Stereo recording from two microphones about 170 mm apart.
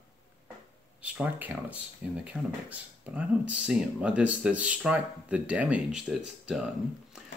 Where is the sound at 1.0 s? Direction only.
5° right (ahead or behind).